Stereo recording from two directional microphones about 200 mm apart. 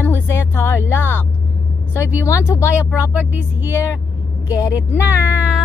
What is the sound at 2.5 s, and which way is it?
Speech, 15° left (ahead or behind).